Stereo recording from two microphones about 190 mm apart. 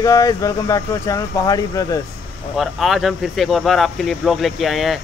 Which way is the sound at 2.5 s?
Centre (ahead or behind).